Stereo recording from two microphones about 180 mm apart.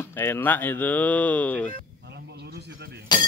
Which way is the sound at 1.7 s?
65° right (ahead or behind).